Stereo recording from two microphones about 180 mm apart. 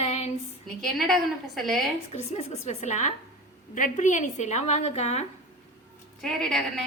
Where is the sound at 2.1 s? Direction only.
35° left (ahead or behind).